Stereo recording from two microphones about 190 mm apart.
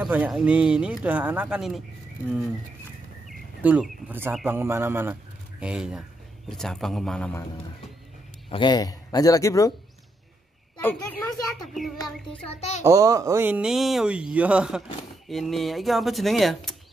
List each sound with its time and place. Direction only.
0.0 s speech: 5° right (ahead or behind)
3.3 s speech: 5° right (ahead or behind)
8.5 s a man's voice: 25° left (ahead or behind)
10.8 s a woman's voice: 10° left (ahead or behind)
12.0 s a child's voice: 30° left (ahead or behind)
12.8 s speech: 15° right (ahead or behind); by 16.7 s centre (ahead or behind)